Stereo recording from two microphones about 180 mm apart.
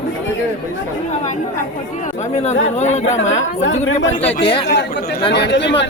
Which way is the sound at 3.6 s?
90° left.